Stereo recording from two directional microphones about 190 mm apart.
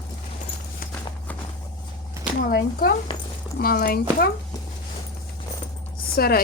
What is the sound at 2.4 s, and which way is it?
Speech, 55° left (ahead or behind).